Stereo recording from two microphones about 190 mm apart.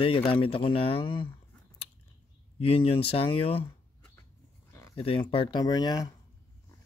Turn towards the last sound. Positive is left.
turn(degrees=20)  # may be behind; listen again after turning